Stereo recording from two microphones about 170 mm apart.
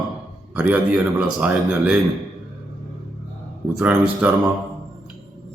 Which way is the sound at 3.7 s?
5° right (ahead or behind).